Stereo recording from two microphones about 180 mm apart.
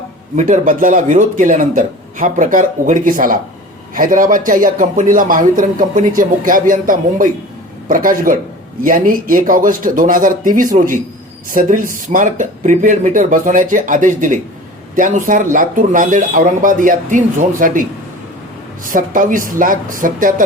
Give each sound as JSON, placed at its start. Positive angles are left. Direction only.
{"t": 0.3, "sound": "speech", "side_deg": -40}
{"t": 18.9, "sound": "speech", "side_deg": -50}